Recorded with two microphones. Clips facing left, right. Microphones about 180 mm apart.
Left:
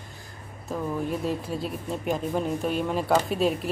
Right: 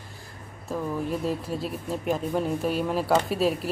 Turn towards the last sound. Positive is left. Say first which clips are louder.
# even
turn(degrees=0)  # may be behind; listen again after turning